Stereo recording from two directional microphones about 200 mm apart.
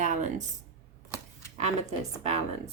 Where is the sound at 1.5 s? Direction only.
35° right (ahead or behind).